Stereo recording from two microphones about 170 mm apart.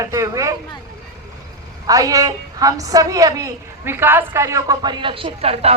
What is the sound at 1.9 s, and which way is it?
A woman's voice, 20° right (ahead or behind).